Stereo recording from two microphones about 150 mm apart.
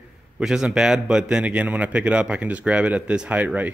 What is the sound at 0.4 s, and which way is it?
A man's voice, 5° right (ahead or behind).